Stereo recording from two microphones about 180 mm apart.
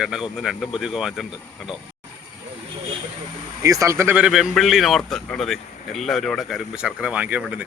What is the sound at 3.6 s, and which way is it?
A man's voice, 15° right (ahead or behind).